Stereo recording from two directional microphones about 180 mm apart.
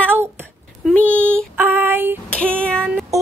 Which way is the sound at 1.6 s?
10° right (ahead or behind).